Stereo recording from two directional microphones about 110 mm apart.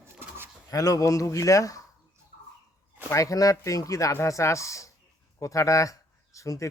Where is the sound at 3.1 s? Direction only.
30° left (ahead or behind).